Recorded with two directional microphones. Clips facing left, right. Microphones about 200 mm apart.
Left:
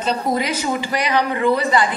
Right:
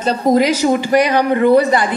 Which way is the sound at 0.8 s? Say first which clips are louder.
Right 7 dB; 55° right (ahead or behind).